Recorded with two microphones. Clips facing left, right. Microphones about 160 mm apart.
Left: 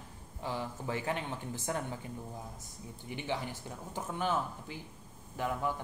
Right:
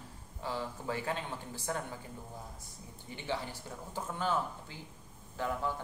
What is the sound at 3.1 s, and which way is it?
Speech, 15° left (ahead or behind).